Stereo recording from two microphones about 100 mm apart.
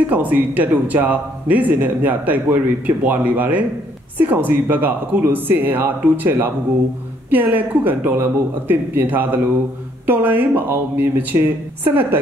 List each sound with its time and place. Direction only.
0.0 s speech: 15° right (ahead or behind)